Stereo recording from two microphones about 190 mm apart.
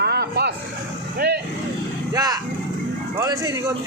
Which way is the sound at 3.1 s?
20° right (ahead or behind).